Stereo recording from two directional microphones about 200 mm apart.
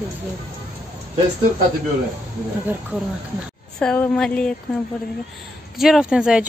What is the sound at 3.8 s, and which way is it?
Speech, 5° left (ahead or behind).